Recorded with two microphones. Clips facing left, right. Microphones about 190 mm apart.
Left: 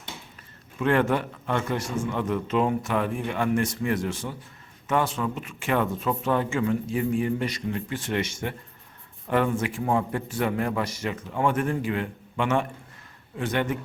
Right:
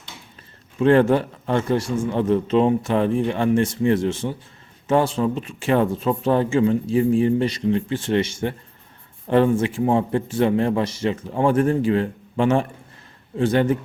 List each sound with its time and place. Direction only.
0.8 s speech: 30° right (ahead or behind)